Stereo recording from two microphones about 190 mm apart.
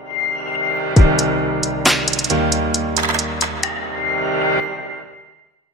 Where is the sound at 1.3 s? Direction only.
15° right (ahead or behind).